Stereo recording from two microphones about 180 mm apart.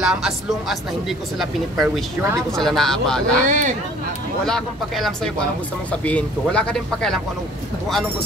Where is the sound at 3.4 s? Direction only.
45° right (ahead or behind).